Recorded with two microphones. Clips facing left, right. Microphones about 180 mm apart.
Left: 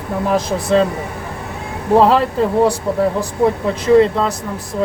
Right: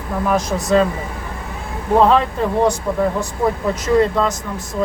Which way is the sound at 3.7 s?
30° left (ahead or behind).